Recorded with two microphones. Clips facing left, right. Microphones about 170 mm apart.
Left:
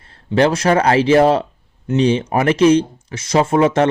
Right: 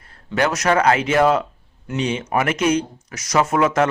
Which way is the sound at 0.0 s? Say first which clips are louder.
Left 6 dB; 30° left (ahead or behind).